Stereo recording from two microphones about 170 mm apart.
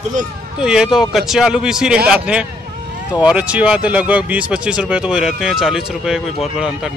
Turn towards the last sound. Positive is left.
turn(degrees=-5)  # may be behind; listen again after turning